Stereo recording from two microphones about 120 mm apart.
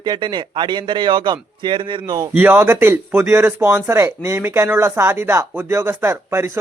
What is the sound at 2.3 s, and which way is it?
A man's voice, 15° right (ahead or behind).